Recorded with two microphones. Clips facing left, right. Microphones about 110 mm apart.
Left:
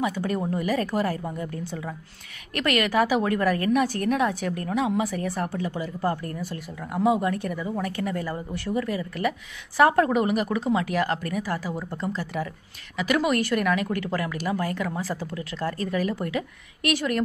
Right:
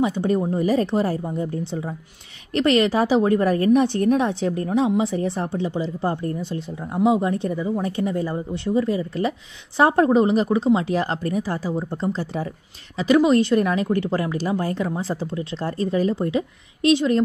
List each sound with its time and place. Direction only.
0.0 s speech: 25° right (ahead or behind)